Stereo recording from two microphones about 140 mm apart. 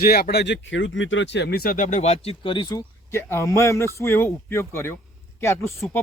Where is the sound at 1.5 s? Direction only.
90° left; by 2.8 s 35° left (ahead or behind).